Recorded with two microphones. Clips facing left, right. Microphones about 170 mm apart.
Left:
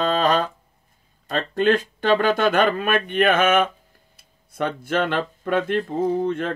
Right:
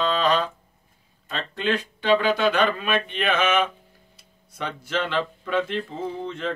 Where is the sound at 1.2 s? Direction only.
45° left (ahead or behind).